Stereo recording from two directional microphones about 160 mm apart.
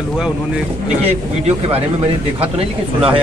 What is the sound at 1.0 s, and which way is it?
Speech, 40° right (ahead or behind).